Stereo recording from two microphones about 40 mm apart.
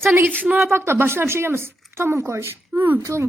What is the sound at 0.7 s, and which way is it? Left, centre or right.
Speech, right.